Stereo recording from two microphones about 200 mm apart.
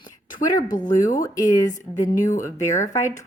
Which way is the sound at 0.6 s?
40° left (ahead or behind).